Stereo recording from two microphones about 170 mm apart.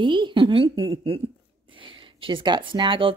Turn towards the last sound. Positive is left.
turn(degrees=-30)  # may be behind; listen again after turning